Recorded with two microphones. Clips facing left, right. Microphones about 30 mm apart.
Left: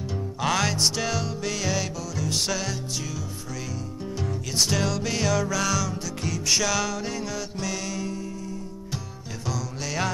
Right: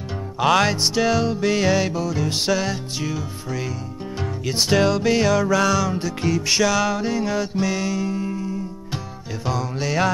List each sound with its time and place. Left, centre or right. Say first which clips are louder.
0.4 s music: right 6 dB; right
4.2 s music: right 3 dB; right
8.2 s music: right 8 dB; right
9.8 s music: right 8 dB; centre